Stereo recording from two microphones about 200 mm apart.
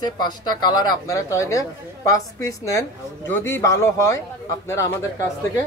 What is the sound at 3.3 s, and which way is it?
Speech, 10° left (ahead or behind).